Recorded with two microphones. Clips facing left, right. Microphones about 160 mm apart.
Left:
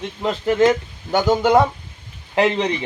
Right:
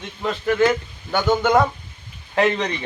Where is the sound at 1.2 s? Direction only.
35° left (ahead or behind).